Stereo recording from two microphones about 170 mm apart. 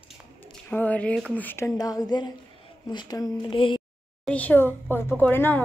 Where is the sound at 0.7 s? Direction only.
10° left (ahead or behind); by 3.8 s 30° left (ahead or behind).